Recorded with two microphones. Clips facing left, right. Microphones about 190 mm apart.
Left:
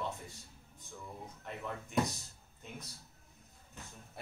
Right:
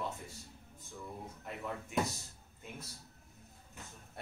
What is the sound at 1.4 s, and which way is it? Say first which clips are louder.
Speech: even; 5° right (ahead or behind).